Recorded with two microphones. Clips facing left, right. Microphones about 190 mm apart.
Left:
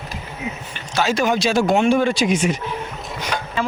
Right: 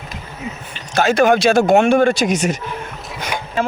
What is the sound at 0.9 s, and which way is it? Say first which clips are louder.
Speech: right 5 dB; 55° right (ahead or behind).